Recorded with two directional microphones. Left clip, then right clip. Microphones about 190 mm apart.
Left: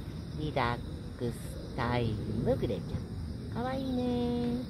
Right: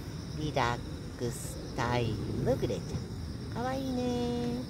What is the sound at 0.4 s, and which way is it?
Speech, 10° left (ahead or behind).